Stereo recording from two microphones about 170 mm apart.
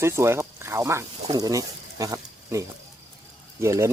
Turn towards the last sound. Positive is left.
turn(degrees=-15)  # may be behind; listen again after turning